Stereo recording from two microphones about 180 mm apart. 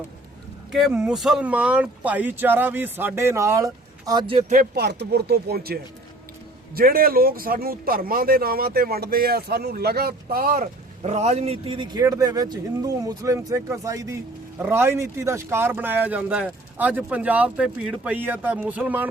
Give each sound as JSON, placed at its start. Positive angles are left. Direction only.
{"t": 0.7, "sound": "speech", "side_deg": 0}
{"t": 4.5, "sound": "speech", "side_deg": -65}